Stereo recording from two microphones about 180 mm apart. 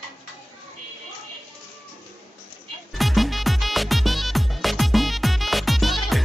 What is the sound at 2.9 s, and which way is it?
Music, centre (ahead or behind).